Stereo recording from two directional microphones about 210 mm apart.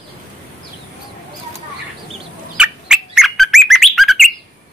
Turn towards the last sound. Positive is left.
turn(degrees=0)  # may be behind; listen again after turning